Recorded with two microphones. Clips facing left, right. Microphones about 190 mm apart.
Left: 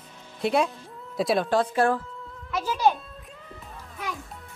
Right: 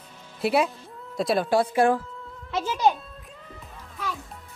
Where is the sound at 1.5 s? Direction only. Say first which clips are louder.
Right 2 dB; 10° right (ahead or behind).